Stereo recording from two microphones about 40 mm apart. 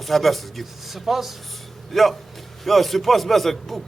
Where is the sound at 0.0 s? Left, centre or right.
Centre.